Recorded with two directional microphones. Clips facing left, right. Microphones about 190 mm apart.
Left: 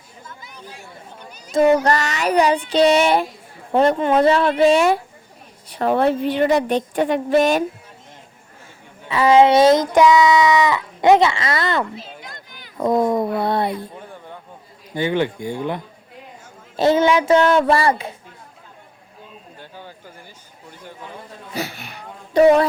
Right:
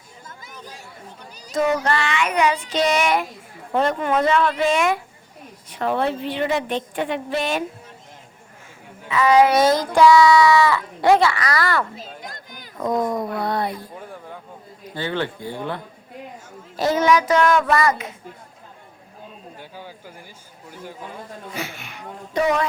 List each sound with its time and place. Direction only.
1.5 s a woman's voice: 30° left (ahead or behind)
9.0 s speech: 30° left (ahead or behind)
12.2 s a sound: 45° right (ahead or behind)
12.8 s speech: 25° left (ahead or behind)
14.9 s speech: 15° left (ahead or behind)
16.7 s speech: 25° left (ahead or behind)
19.5 s speech: 10° right (ahead or behind)
21.5 s a sound: 35° left (ahead or behind)